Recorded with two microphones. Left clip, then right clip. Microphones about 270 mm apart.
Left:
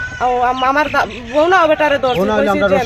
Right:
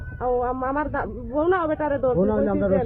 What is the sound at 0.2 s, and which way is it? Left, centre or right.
Speech, centre.